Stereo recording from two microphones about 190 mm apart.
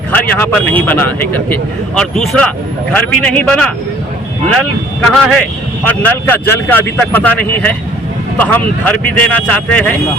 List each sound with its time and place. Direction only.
0.1 s a man's voice: 10° left (ahead or behind)
5.0 s a man's voice: centre (ahead or behind)